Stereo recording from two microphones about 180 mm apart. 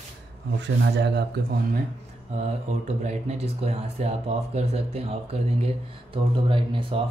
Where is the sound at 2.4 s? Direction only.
35° right (ahead or behind).